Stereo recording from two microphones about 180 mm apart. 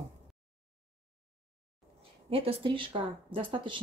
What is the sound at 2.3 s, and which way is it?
Speech, 30° right (ahead or behind).